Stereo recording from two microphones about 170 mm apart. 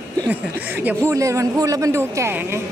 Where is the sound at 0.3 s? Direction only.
10° right (ahead or behind).